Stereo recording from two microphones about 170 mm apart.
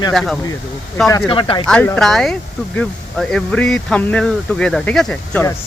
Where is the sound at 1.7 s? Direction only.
5° left (ahead or behind).